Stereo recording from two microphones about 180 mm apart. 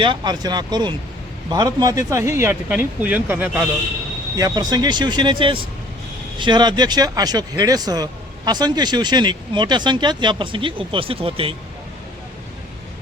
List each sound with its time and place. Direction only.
0.0 s speech: 25° right (ahead or behind); by 3.7 s 10° right (ahead or behind)
4.4 s speech: 20° right (ahead or behind)